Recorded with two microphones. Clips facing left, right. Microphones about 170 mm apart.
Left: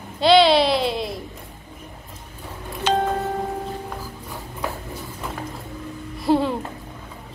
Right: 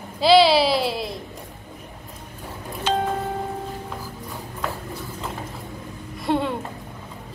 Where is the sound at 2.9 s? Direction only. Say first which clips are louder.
Left 2 dB; 75° left (ahead or behind).